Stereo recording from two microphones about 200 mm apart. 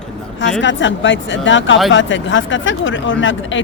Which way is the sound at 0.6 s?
65° left (ahead or behind).